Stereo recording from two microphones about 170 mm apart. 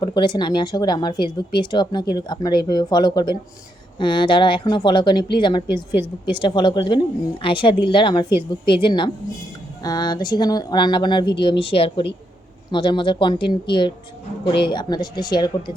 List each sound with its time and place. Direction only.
0.0 s speech: 25° left (ahead or behind)